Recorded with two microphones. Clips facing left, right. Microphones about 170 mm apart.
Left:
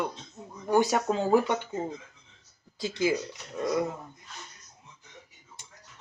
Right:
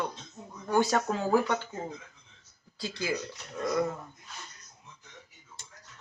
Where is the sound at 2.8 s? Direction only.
20° left (ahead or behind).